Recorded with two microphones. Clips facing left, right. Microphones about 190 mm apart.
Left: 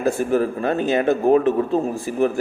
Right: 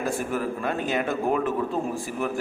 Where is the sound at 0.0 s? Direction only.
40° left (ahead or behind).